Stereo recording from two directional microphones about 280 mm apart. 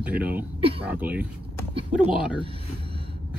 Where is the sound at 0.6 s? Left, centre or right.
Centre.